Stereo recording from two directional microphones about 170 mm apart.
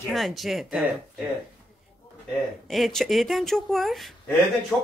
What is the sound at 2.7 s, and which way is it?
Speech, centre (ahead or behind).